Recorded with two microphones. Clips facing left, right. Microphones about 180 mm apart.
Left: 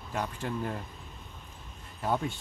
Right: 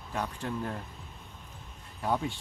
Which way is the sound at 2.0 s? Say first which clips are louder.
Even; centre (ahead or behind).